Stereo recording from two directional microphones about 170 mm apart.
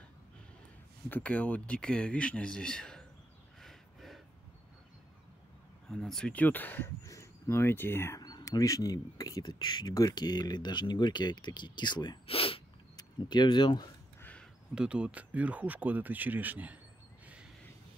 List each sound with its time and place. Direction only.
1.0 s speech: 10° left (ahead or behind)
3.6 s a sound: centre (ahead or behind)
5.9 s speech: 5° left (ahead or behind); by 13.8 s 25° left (ahead or behind)
14.8 s speech: 5° right (ahead or behind)